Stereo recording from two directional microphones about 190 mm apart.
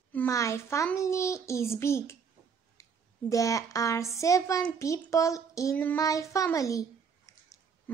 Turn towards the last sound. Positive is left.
turn(degrees=15)  # may be behind; listen again after turning